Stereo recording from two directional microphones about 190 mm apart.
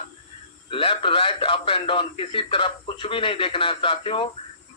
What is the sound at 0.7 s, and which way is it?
Speech, 30° left (ahead or behind).